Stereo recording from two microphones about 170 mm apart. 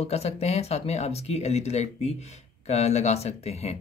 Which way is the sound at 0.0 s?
40° left (ahead or behind).